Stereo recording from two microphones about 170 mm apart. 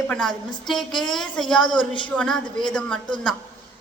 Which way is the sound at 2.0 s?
5° left (ahead or behind).